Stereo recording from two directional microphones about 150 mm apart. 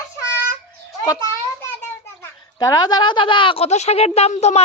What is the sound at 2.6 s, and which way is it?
A woman's voice, 25° left (ahead or behind).